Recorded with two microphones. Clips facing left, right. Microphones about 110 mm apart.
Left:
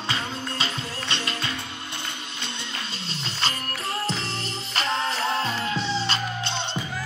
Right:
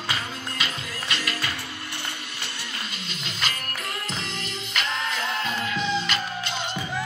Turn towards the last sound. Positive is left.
turn(degrees=30)  # may be behind; listen again after turning